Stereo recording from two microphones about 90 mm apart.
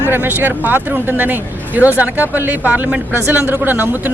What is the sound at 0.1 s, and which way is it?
A man's voice, 20° right (ahead or behind).